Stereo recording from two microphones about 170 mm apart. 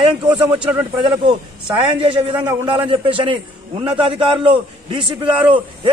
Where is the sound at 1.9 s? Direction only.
30° right (ahead or behind).